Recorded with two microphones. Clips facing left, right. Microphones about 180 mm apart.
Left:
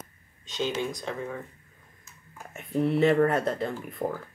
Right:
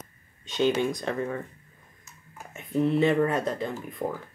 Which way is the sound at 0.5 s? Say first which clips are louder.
Right 5 dB; 60° right (ahead or behind).